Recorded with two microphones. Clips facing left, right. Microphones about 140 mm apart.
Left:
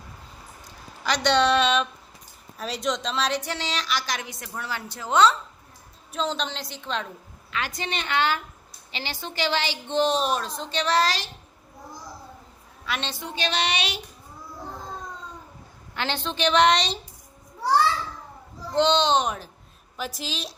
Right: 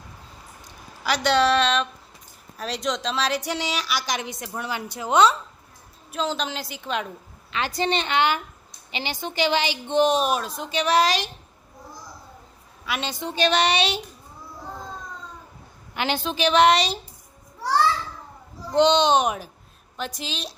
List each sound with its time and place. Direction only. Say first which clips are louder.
1.0 s a woman's voice: right 1 dB; 5° right (ahead or behind)
3.4 s a woman's voice: right 3 dB; 15° right (ahead or behind)
6.1 s a woman's voice: right 1 dB; centre (ahead or behind)
7.5 s a woman's voice: right 6 dB; 30° right (ahead or behind)
12.8 s a woman's voice: right 2 dB; 10° right (ahead or behind)
13.3 s a sound: right 7 dB; 45° right (ahead or behind)
13.7 s a woman's voice: right 6 dB; 30° right (ahead or behind)
16.0 s a woman's voice: right 3 dB; 10° right (ahead or behind)
18.7 s a woman's voice: right 3 dB; 15° right (ahead or behind)
20.0 s a woman's voice: right 1 dB; 5° left (ahead or behind)